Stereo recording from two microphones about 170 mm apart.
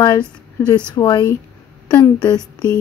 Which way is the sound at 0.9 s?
25° left (ahead or behind).